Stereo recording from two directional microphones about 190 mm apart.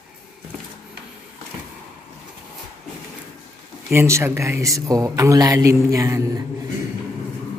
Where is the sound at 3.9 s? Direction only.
15° right (ahead or behind).